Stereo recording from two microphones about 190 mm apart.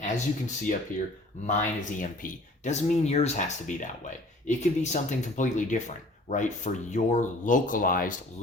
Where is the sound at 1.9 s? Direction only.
40° left (ahead or behind).